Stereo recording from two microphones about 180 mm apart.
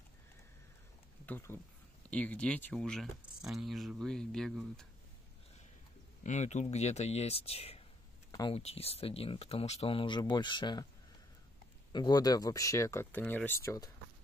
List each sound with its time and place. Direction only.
1.2 s speech: 10° left (ahead or behind)
6.2 s speech: 40° left (ahead or behind)
8.3 s a sound: 20° left (ahead or behind)
8.5 s speech: 35° left (ahead or behind)
11.9 s speech: 25° left (ahead or behind)